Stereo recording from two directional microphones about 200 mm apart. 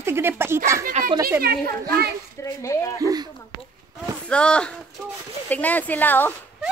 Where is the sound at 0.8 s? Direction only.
45° right (ahead or behind).